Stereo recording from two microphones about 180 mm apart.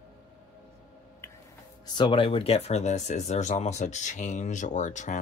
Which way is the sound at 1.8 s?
25° left (ahead or behind).